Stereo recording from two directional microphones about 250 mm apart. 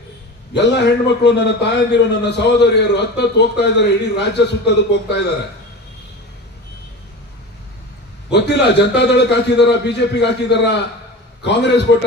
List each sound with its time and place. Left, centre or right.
0.6 s a man's voice: left
8.3 s a man's voice: left